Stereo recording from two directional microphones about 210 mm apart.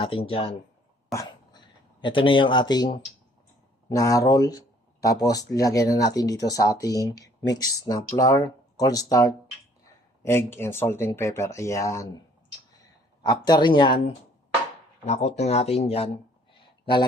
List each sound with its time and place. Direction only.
0.0 s speech: 25° left (ahead or behind)
13.2 s speech: 20° left (ahead or behind)
15.0 s speech: 30° left (ahead or behind)